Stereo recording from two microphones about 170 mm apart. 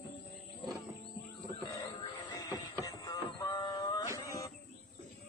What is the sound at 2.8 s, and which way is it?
Music, 20° left (ahead or behind).